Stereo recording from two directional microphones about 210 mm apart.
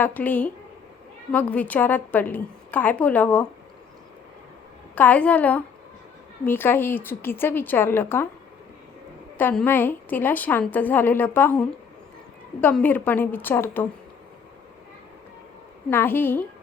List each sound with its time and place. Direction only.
0.0 s a woman's voice: 10° left (ahead or behind)
4.9 s a woman's voice: 5° left (ahead or behind)
9.4 s a woman's voice: 10° left (ahead or behind)
15.9 s a woman's voice: 10° left (ahead or behind)